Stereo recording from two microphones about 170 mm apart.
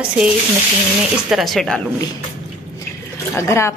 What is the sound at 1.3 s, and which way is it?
Speech, centre (ahead or behind).